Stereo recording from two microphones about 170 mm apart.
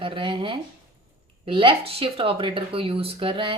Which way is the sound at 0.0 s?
30° right (ahead or behind).